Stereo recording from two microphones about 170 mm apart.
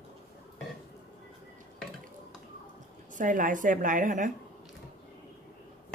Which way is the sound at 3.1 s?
50° right (ahead or behind).